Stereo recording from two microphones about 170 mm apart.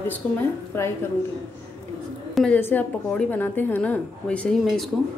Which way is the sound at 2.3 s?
10° left (ahead or behind).